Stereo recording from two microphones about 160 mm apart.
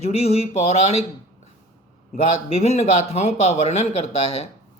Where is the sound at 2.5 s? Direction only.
45° left (ahead or behind).